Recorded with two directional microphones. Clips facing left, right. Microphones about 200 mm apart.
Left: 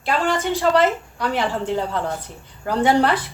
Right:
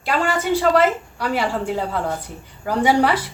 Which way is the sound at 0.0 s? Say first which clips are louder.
Even; 10° right (ahead or behind).